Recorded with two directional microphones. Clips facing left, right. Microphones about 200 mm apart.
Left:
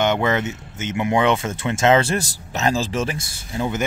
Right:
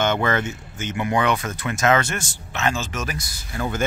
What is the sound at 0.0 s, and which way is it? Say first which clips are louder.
Speech: left 2 dB; 20° left (ahead or behind).